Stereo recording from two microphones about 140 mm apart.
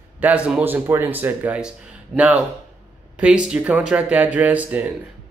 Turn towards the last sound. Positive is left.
turn(degrees=-10)  # may be behind; listen again after turning